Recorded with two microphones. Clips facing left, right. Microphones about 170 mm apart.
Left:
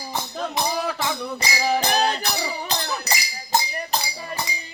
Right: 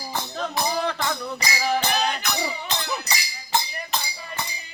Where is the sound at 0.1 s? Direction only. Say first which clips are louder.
Left 1 dB; 10° left (ahead or behind).